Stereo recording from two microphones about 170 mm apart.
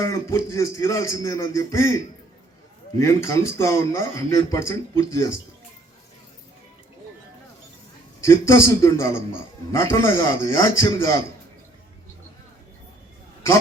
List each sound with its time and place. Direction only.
0.0 s speech: 20° left (ahead or behind)
3.0 s speech: 15° left (ahead or behind)
8.2 s speech: 15° left (ahead or behind)